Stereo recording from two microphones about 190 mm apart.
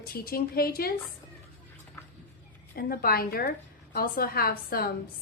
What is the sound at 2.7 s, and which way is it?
A woman's voice, 50° left (ahead or behind).